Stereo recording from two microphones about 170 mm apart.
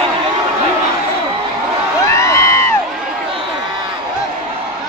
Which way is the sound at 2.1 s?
15° left (ahead or behind).